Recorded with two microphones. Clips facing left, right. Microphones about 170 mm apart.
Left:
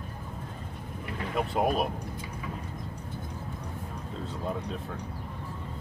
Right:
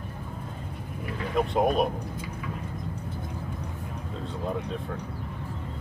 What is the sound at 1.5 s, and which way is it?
Speech, 5° left (ahead or behind).